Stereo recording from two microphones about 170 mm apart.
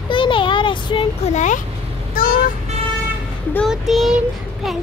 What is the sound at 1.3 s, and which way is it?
Speech, 45° left (ahead or behind).